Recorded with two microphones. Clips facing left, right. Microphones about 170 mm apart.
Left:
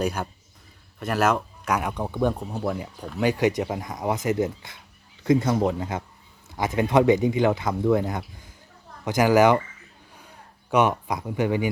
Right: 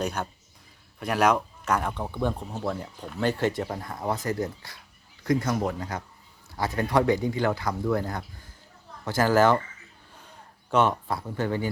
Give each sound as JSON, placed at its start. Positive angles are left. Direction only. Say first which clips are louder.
{"t": 0.0, "sound": "speech", "louder": "left 3 dB", "side_deg": 10}
{"t": 10.7, "sound": "speech", "louder": "left 2 dB", "side_deg": 15}